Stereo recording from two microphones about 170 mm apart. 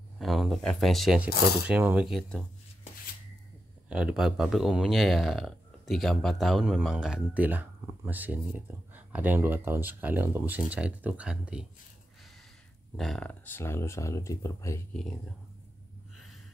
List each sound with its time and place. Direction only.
0.2 s speech: centre (ahead or behind)
1.3 s speech: 65° left (ahead or behind)
1.7 s speech: 10° right (ahead or behind)
2.0 s speech: 5° left (ahead or behind)
3.9 s speech: 5° right (ahead or behind)
12.9 s speech: centre (ahead or behind); by 14.8 s 15° left (ahead or behind)